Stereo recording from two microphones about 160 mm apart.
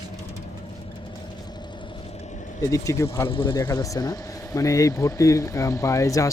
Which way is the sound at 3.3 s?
30° left (ahead or behind).